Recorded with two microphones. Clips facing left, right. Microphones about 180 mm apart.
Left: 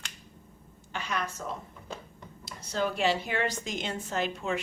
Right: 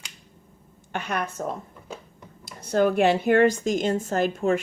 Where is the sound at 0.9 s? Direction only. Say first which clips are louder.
Right 5 dB; 55° right (ahead or behind).